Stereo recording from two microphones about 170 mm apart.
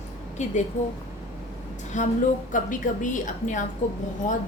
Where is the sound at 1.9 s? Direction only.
45° left (ahead or behind).